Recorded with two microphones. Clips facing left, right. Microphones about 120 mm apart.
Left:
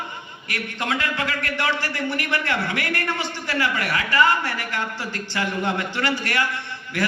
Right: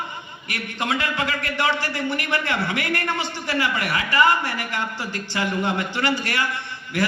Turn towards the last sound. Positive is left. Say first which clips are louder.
# right 1 dB
turn(degrees=-15)  # may be behind; listen again after turning